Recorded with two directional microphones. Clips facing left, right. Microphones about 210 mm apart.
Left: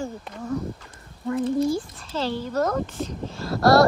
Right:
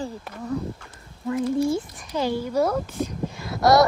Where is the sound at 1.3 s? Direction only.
25° left (ahead or behind).